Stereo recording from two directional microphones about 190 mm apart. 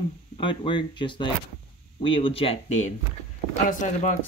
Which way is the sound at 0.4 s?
25° left (ahead or behind).